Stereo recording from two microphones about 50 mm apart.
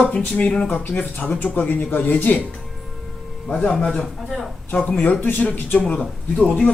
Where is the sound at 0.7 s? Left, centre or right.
Left.